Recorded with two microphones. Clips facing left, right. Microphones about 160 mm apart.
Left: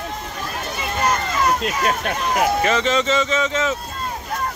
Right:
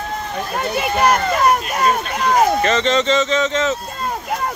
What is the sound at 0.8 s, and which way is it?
Speech, 70° right (ahead or behind).